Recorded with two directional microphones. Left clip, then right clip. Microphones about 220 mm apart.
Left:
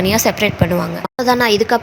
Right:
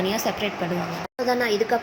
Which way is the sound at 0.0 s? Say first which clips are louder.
Left 10 dB; 45° left (ahead or behind).